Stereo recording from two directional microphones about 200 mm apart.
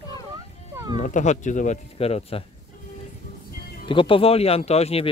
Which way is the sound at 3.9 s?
25° left (ahead or behind).